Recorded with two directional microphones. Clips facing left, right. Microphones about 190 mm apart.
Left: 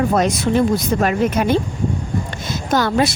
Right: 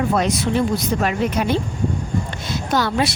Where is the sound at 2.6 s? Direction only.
50° left (ahead or behind).